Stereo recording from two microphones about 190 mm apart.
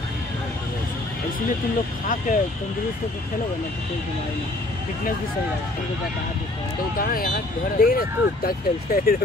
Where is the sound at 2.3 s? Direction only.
45° left (ahead or behind).